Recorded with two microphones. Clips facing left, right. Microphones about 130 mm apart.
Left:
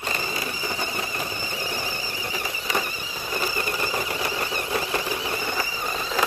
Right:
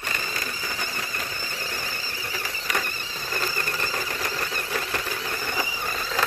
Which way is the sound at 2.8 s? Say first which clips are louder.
Left 2 dB; 10° left (ahead or behind).